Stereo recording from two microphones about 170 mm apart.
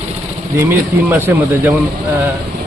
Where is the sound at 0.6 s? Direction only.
15° right (ahead or behind).